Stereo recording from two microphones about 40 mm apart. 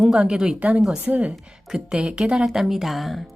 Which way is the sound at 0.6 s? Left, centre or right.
Right.